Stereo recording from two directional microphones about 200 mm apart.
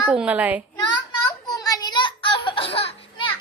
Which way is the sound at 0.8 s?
20° left (ahead or behind).